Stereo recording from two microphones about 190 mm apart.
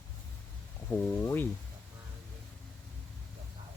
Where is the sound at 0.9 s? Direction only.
10° left (ahead or behind).